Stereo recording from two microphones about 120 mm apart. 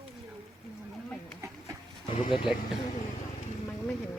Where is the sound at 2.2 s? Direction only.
50° left (ahead or behind).